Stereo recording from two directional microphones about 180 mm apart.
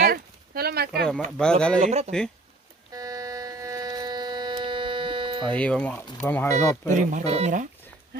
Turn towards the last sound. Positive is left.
turn(degrees=-40)  # may be behind; listen again after turning